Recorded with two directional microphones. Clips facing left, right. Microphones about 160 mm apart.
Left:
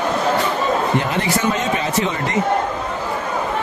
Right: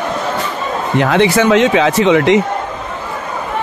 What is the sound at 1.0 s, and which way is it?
Speech, 90° right.